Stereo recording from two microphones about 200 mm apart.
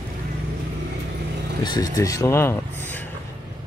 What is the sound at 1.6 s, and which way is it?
Speech, 20° left (ahead or behind).